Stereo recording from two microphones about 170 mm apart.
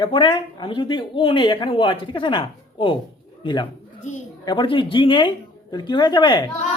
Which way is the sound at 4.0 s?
45° left (ahead or behind).